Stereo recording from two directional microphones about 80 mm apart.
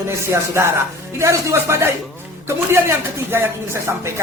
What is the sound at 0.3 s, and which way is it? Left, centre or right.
Speech, right.